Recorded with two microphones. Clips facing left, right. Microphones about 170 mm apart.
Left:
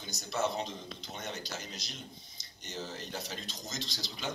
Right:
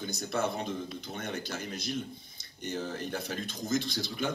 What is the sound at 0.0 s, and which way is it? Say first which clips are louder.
Speech: right 2 dB; 55° right (ahead or behind).